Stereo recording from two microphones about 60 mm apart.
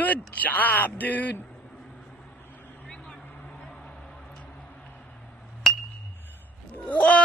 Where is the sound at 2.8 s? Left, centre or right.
Centre.